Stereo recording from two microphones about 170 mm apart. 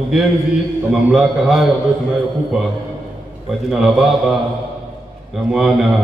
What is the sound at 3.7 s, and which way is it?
Speech, centre (ahead or behind).